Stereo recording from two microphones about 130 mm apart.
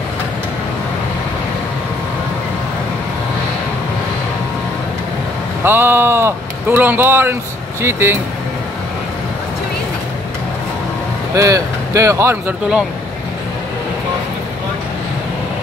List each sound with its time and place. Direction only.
5.6 s speech: 15° right (ahead or behind)
11.3 s speech: 25° right (ahead or behind)